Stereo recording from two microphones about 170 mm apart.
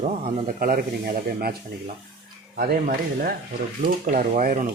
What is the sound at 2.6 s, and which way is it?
Speech, 60° right (ahead or behind).